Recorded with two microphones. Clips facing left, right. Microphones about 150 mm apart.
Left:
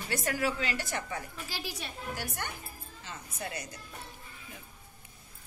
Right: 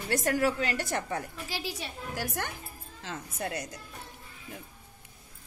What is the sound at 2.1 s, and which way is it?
Speech, 90° right.